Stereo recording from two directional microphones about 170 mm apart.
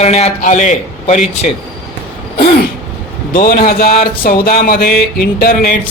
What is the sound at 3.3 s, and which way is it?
Speech, 60° left (ahead or behind).